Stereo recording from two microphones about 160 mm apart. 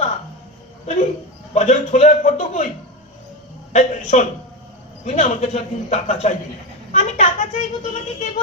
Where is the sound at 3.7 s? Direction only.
50° left (ahead or behind).